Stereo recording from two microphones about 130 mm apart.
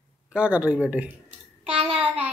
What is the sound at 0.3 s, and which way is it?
Speech, 10° right (ahead or behind).